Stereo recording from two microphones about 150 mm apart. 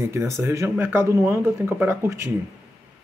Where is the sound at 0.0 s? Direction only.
20° right (ahead or behind).